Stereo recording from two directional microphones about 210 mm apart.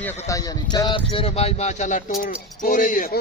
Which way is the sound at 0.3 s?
15° left (ahead or behind).